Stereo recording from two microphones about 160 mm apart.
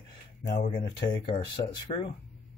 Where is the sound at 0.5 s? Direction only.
45° left (ahead or behind).